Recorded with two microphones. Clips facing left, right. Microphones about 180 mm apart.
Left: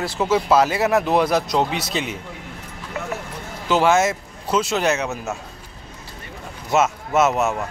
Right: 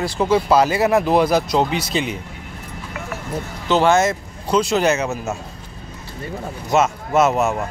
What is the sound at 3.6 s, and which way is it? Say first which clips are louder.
Speech: right 1 dB; 5° left (ahead or behind).